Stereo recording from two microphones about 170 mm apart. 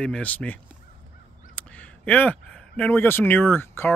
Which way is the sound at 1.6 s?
10° left (ahead or behind).